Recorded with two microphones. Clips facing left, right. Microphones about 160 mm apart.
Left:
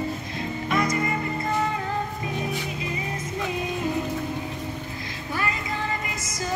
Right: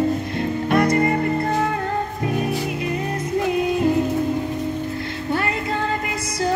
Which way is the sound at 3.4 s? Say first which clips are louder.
Right 8 dB; 65° right (ahead or behind).